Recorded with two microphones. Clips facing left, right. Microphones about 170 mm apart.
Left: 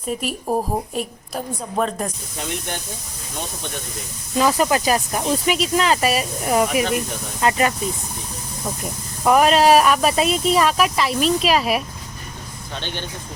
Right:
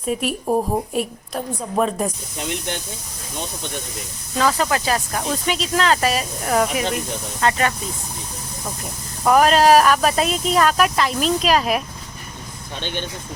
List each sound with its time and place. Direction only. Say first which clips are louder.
0.1 s speech: right 2 dB; centre (ahead or behind)
4.4 s speech: left 2 dB; 15° left (ahead or behind)
9.2 s speech: even; 5° left (ahead or behind)
12.8 s speech: right 4 dB; 15° right (ahead or behind)